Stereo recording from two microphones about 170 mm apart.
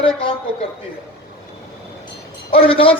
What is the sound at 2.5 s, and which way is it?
Speech, 30° left (ahead or behind).